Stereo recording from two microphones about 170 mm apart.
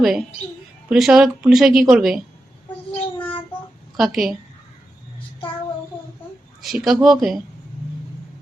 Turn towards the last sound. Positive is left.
turn(degrees=0)  # may be behind; listen again after turning